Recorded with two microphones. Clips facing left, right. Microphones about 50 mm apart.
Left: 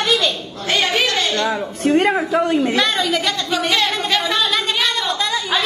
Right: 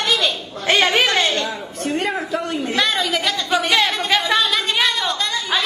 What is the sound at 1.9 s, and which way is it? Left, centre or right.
Speech, left.